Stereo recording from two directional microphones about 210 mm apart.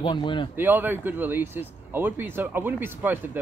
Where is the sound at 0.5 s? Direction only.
10° right (ahead or behind).